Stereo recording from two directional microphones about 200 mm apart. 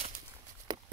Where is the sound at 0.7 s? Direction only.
20° right (ahead or behind).